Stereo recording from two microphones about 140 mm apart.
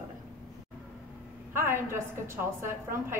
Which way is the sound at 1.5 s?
15° right (ahead or behind).